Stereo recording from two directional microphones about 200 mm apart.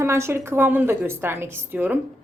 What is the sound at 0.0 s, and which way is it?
A woman's voice, 15° right (ahead or behind).